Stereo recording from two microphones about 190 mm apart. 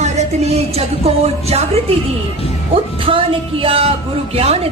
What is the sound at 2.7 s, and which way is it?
Music, 30° right (ahead or behind).